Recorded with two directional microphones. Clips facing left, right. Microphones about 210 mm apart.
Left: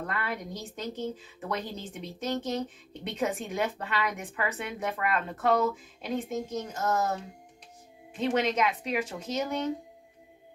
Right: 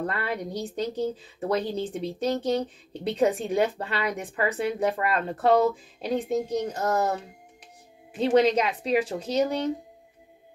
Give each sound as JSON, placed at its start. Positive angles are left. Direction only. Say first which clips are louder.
{"t": 0.0, "sound": "a woman's voice", "louder": "right 5 dB", "side_deg": -35}
{"t": 8.2, "sound": "a woman's voice", "louder": "right 6 dB", "side_deg": -35}